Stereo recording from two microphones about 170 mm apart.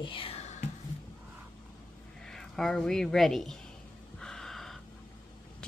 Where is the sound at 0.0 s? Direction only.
30° left (ahead or behind).